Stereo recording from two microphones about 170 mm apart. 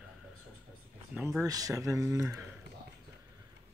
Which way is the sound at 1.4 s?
20° right (ahead or behind).